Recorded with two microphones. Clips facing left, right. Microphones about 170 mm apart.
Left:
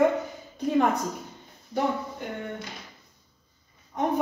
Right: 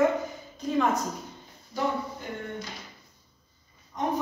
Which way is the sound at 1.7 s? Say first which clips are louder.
Left 3 dB; 60° left (ahead or behind).